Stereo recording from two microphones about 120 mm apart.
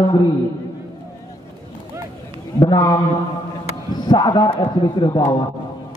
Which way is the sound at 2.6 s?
40° left (ahead or behind).